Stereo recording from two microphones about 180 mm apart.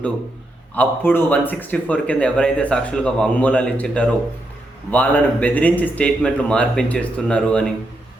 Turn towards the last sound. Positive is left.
turn(degrees=5)  # may be behind; listen again after turning